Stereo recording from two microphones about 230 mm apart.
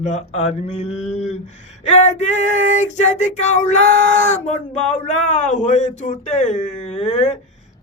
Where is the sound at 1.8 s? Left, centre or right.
Left.